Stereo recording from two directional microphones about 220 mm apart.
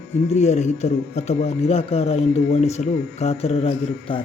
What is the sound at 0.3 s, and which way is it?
Speech, 30° left (ahead or behind).